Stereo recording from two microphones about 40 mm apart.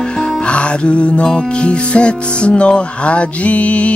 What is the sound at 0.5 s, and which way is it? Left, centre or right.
Music, left.